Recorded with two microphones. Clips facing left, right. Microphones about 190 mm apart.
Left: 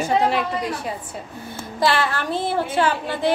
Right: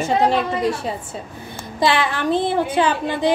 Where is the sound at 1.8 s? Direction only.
15° right (ahead or behind).